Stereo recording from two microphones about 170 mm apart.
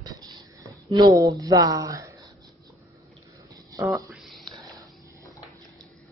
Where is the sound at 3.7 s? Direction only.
20° right (ahead or behind).